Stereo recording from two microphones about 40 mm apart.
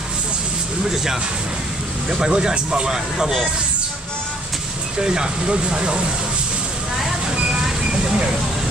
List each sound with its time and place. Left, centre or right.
2.0 s speech: centre
4.9 s speech: centre
7.9 s speech: right